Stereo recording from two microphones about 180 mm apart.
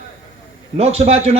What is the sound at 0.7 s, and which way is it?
Speech, 35° right (ahead or behind).